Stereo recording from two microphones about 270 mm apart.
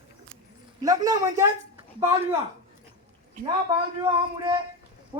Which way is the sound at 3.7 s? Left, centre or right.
Centre.